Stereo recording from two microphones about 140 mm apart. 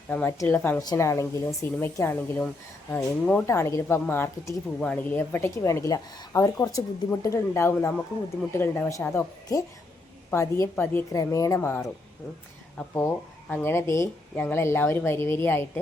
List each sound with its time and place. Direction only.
0.1 s a woman's voice: 10° left (ahead or behind)
3.4 s a woman's voice: 20° left (ahead or behind)
12.9 s speech: 20° left (ahead or behind)